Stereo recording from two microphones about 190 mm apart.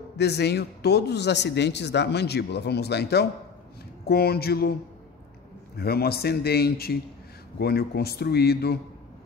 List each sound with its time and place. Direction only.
0.2 s speech: 60° left (ahead or behind)
5.8 s speech: 55° left (ahead or behind)